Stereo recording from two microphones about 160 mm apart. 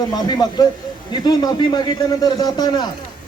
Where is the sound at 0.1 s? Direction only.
25° left (ahead or behind).